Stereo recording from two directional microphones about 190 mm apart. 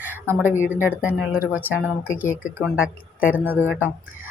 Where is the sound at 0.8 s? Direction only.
5° right (ahead or behind).